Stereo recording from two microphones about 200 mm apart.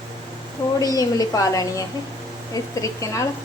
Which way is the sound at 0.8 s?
20° left (ahead or behind).